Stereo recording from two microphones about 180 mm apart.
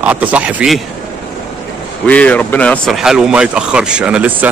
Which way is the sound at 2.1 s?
10° left (ahead or behind).